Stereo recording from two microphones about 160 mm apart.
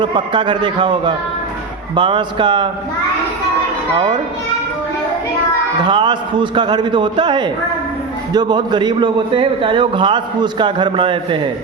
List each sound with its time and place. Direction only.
0.0 s a man's voice: 30° right (ahead or behind)
3.9 s a man's voice: 30° right (ahead or behind)
5.8 s a man's voice: 30° right (ahead or behind)